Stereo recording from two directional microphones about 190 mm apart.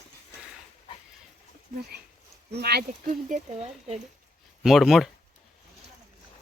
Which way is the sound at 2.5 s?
55° right (ahead or behind).